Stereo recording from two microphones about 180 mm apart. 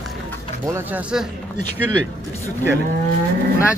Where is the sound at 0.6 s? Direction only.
10° right (ahead or behind).